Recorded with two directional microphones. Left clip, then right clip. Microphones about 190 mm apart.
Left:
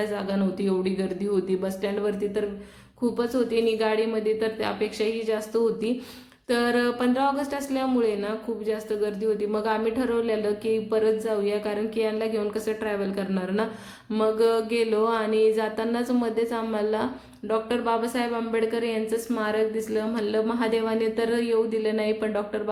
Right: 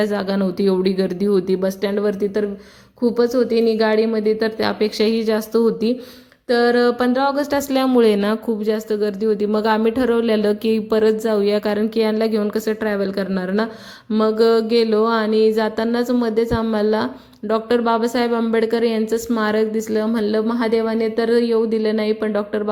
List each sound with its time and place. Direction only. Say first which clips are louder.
0.0 s speech: right 7 dB; 40° right (ahead or behind)
6.5 s speech: right 8 dB; 25° right (ahead or behind)